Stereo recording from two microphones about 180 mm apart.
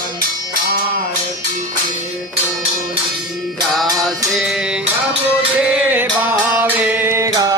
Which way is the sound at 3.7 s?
Centre (ahead or behind).